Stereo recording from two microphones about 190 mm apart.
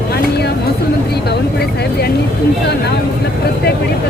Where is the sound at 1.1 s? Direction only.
60° left (ahead or behind).